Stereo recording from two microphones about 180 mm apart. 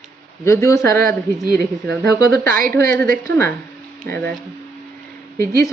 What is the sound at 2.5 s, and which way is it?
Speech, 50° right (ahead or behind).